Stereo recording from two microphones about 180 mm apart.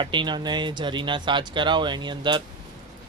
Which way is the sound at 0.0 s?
25° right (ahead or behind).